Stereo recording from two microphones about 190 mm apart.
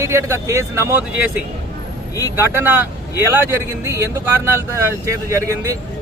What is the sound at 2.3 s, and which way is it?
Speech, 10° right (ahead or behind).